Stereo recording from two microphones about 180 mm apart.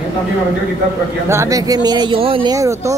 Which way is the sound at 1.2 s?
15° right (ahead or behind).